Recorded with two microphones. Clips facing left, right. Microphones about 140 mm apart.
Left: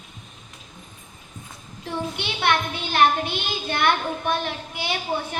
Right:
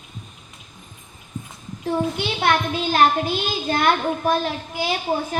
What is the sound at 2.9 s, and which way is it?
A child's voice, 40° right (ahead or behind).